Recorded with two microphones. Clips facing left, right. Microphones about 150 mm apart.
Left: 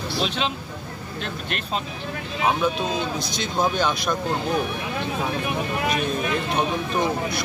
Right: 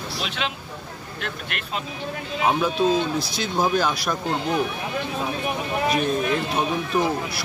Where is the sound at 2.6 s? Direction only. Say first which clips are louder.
Right 3 dB; 5° right (ahead or behind).